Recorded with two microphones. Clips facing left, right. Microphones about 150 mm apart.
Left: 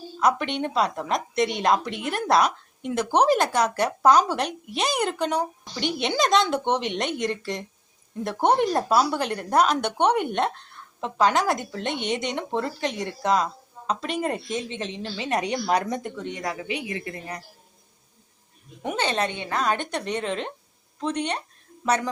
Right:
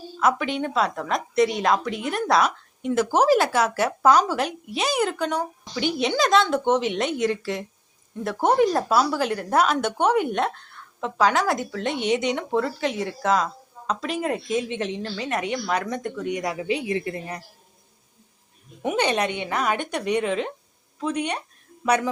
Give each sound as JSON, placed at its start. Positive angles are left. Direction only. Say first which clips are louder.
{"t": 0.2, "sound": "speech", "louder": "right 1 dB", "side_deg": -5}
{"t": 15.0, "sound": "a woman's voice", "louder": "right 1 dB", "side_deg": 15}
{"t": 15.3, "sound": "speech", "louder": "left 3 dB", "side_deg": 30}
{"t": 16.2, "sound": "speech", "louder": "right 4 dB", "side_deg": -20}
{"t": 18.8, "sound": "speech", "louder": "right 3 dB", "side_deg": -15}